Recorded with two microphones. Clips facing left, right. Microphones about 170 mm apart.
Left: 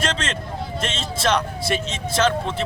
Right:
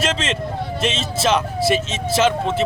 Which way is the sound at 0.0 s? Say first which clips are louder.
Right 3 dB; 5° right (ahead or behind).